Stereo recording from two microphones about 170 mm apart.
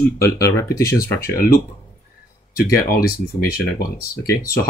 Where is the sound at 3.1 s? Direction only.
65° left (ahead or behind).